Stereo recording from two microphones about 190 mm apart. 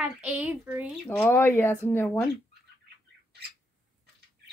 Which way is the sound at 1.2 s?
10° left (ahead or behind).